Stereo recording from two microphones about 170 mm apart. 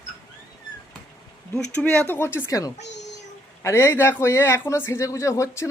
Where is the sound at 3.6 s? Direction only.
15° left (ahead or behind).